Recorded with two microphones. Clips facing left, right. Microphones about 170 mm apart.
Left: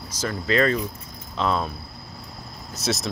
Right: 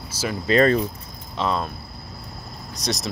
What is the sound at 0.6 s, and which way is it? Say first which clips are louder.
Speech: right 4 dB; 40° right (ahead or behind).